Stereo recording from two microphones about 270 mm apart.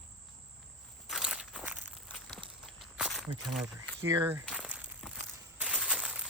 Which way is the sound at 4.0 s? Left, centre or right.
Centre.